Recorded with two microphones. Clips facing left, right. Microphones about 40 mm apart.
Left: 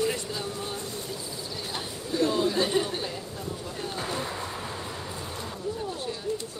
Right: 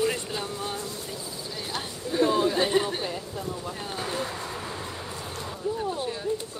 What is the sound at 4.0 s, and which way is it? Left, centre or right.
Speech, centre.